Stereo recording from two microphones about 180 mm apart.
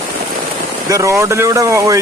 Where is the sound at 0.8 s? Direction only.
15° right (ahead or behind).